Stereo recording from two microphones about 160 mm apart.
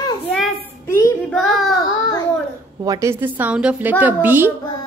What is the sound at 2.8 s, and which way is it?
A woman's voice, 20° right (ahead or behind).